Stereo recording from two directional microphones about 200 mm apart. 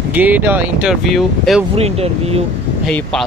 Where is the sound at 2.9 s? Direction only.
Centre (ahead or behind).